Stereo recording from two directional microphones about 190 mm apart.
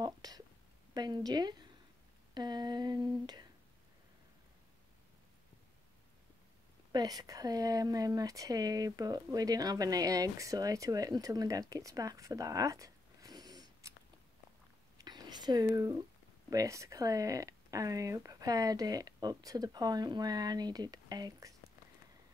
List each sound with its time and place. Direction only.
0.0 s a sound: 20° right (ahead or behind)
0.9 s speech: 20° right (ahead or behind)
6.9 s speech: 20° right (ahead or behind)
11.7 s zipper: 20° right (ahead or behind)
15.0 s a sound: 20° right (ahead or behind)
16.4 s speech: 15° right (ahead or behind)